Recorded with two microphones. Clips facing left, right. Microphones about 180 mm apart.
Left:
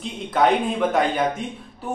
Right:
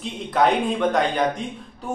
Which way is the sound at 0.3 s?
Centre (ahead or behind).